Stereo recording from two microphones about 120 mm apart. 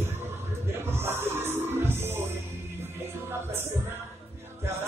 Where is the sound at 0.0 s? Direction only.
20° right (ahead or behind).